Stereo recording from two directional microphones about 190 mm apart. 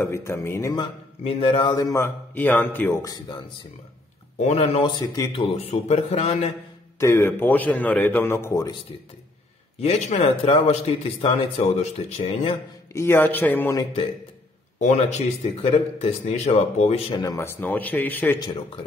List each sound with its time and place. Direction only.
0.0 s a man's voice: 15° left (ahead or behind)
1.2 s a man's voice: 30° left (ahead or behind)
4.4 s a man's voice: 35° left (ahead or behind)
7.0 s a man's voice: 15° left (ahead or behind)
9.8 s a man's voice: 35° left (ahead or behind)
12.9 s a man's voice: 10° left (ahead or behind)
14.8 s a man's voice: 35° left (ahead or behind)
17.1 s a man's voice: 20° left (ahead or behind)
18.4 s speech: 25° left (ahead or behind)